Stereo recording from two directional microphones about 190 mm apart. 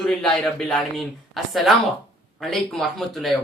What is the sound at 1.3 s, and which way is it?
Speech, centre (ahead or behind).